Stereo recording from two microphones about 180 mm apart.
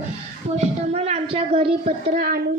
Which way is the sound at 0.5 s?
35° right (ahead or behind).